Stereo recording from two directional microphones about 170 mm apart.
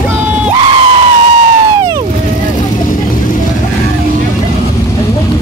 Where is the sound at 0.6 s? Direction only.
30° right (ahead or behind).